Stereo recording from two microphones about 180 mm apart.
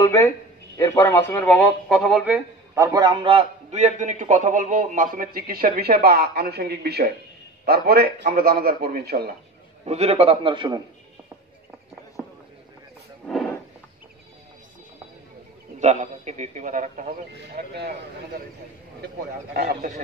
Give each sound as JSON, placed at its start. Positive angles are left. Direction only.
{"t": 0.0, "sound": "a man's voice", "side_deg": 15}
{"t": 9.8, "sound": "a man's voice", "side_deg": -35}
{"t": 12.2, "sound": "a sound", "side_deg": 0}
{"t": 15.8, "sound": "a man's voice", "side_deg": -40}
{"t": 17.4, "sound": "a man's voice", "side_deg": -65}
{"t": 19.5, "sound": "a man's voice", "side_deg": -60}